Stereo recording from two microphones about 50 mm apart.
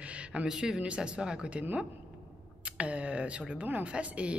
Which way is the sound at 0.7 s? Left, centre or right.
Right.